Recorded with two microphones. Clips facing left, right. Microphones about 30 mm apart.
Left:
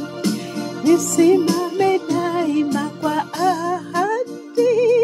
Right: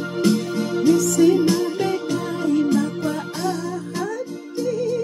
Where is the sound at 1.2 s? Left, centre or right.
Left.